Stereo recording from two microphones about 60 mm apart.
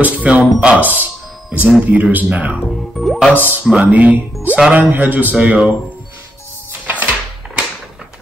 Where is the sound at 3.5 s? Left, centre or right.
Right.